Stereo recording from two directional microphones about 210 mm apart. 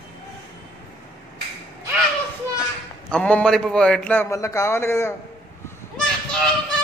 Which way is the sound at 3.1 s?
5° left (ahead or behind).